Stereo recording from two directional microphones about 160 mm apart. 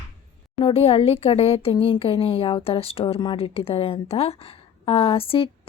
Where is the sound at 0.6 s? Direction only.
40° left (ahead or behind).